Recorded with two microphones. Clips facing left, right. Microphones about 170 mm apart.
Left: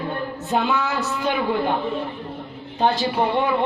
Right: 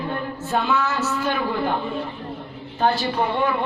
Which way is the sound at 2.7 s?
20° left (ahead or behind).